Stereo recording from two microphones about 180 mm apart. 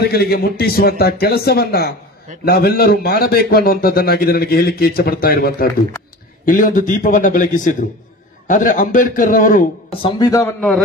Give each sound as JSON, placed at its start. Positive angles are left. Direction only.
{"t": 0.0, "sound": "a man's voice", "side_deg": 60}
{"t": 9.8, "sound": "speech", "side_deg": 25}